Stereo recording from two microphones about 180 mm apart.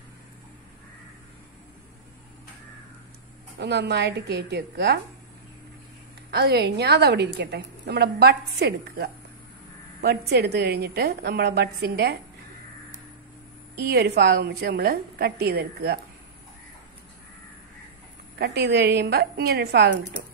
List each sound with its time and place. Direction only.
3.5 s a woman's voice: 70° right (ahead or behind)
6.3 s a woman's voice: 65° right (ahead or behind)
13.7 s a woman's voice: 60° right (ahead or behind)
18.4 s a woman's voice: 65° right (ahead or behind)